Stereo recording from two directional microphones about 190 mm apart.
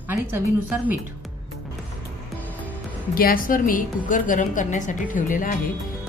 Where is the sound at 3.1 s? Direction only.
50° left (ahead or behind).